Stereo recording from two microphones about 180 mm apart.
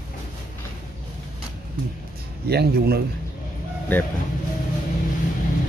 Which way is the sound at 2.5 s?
60° right (ahead or behind).